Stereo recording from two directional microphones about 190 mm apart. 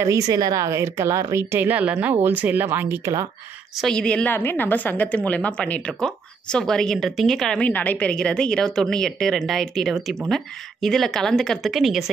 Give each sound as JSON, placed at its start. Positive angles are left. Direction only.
{"t": 0.0, "sound": "speech", "side_deg": -15}
{"t": 3.7, "sound": "a woman's voice", "side_deg": 5}